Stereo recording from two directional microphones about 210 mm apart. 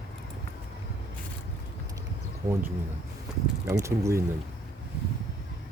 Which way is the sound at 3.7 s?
15° right (ahead or behind).